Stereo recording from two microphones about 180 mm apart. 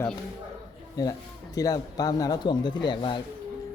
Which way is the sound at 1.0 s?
20° left (ahead or behind).